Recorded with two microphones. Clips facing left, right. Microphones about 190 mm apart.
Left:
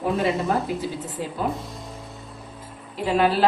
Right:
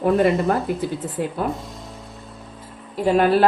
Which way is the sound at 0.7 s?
55° right (ahead or behind).